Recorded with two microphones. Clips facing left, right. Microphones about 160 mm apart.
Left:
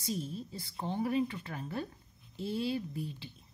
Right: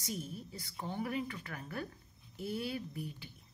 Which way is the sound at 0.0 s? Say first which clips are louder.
Left 5 dB; 25° left (ahead or behind).